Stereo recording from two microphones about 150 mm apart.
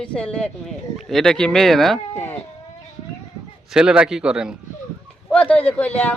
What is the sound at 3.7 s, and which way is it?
Speech, 5° right (ahead or behind).